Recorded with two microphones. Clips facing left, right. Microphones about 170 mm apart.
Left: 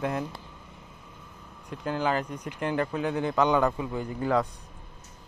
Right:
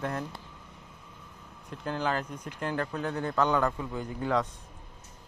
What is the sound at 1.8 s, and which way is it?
Speech, 5° left (ahead or behind).